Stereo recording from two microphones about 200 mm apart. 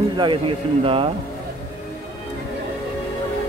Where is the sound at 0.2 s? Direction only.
25° right (ahead or behind).